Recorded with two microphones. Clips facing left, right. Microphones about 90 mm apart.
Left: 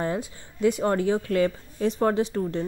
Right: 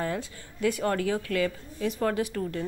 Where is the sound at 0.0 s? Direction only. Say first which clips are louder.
Left 3 dB; 25° left (ahead or behind).